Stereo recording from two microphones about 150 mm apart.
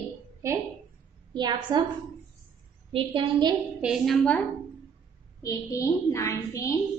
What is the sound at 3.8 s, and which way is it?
Speech, centre (ahead or behind).